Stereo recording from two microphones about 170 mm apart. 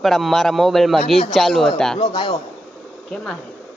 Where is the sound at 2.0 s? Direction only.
30° left (ahead or behind).